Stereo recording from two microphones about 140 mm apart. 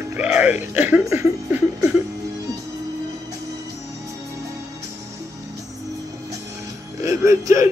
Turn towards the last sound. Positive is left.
turn(degrees=-20)  # may be behind; listen again after turning